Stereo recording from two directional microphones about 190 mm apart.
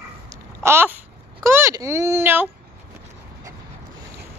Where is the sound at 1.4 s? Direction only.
15° right (ahead or behind).